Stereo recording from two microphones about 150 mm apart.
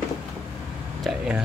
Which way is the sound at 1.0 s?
5° right (ahead or behind).